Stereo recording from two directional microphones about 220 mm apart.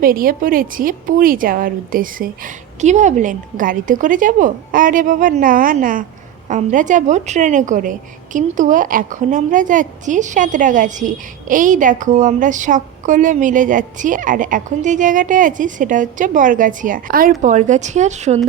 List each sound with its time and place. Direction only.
0.0 s a woman's voice: 40° right (ahead or behind)